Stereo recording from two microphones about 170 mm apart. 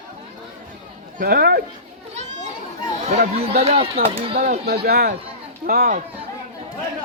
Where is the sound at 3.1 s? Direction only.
45° right (ahead or behind).